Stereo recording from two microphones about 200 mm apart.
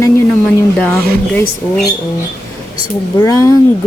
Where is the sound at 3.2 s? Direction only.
15° left (ahead or behind).